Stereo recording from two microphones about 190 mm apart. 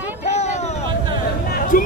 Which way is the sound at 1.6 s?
45° left (ahead or behind).